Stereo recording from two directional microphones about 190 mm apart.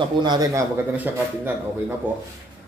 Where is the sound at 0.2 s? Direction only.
20° right (ahead or behind).